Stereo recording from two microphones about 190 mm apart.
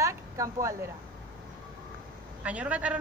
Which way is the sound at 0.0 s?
15° right (ahead or behind).